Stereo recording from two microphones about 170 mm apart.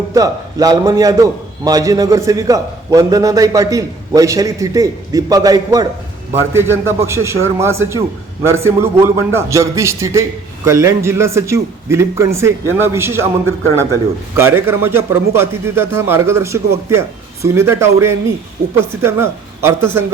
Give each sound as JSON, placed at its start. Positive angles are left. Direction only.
{"t": 0.1, "sound": "a man's voice", "side_deg": -20}